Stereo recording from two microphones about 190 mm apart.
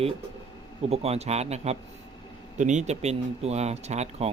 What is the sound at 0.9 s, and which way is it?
Speech, 35° right (ahead or behind).